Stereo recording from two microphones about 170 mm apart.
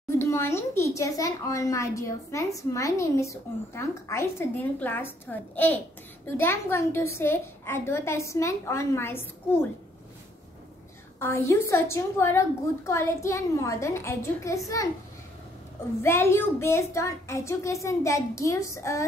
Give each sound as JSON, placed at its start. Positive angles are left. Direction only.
{"t": 0.2, "sound": "a woman's voice", "side_deg": 15}
{"t": 11.1, "sound": "a woman's voice", "side_deg": 15}
{"t": 16.0, "sound": "a woman's voice", "side_deg": 15}